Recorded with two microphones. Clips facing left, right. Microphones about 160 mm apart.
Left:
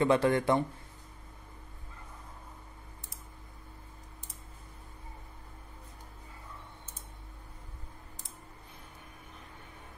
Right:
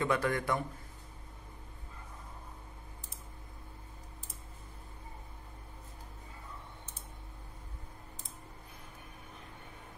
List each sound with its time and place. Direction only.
0.0 s a man's voice: 25° left (ahead or behind)